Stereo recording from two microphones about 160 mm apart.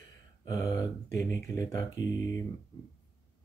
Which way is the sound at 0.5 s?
20° left (ahead or behind).